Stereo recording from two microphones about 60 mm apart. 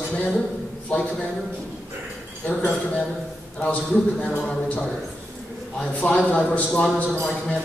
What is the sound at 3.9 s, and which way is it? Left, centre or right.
A man's voice, centre.